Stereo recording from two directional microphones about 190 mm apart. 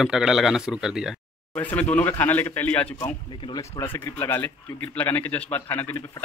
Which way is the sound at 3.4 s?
20° left (ahead or behind).